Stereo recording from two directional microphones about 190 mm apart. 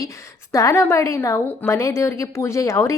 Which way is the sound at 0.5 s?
15° left (ahead or behind).